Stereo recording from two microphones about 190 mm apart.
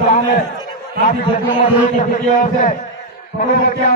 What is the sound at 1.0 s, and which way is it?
A man's voice, 40° left (ahead or behind).